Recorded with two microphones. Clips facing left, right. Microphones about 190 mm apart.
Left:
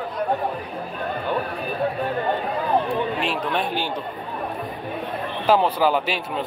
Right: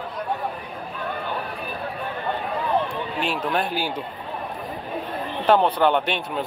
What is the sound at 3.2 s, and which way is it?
Speech, centre (ahead or behind).